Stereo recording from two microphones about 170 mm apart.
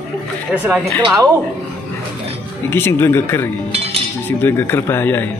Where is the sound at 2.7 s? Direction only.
15° left (ahead or behind).